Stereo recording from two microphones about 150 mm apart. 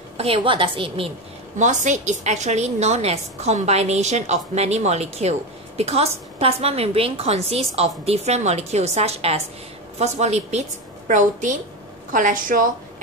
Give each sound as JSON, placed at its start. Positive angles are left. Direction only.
{"t": 0.2, "sound": "a woman's voice", "side_deg": -35}
{"t": 1.6, "sound": "a woman's voice", "side_deg": -55}
{"t": 11.1, "sound": "a woman's voice", "side_deg": -55}